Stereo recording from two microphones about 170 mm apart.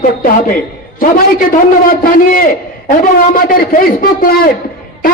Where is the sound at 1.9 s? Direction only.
55° left (ahead or behind).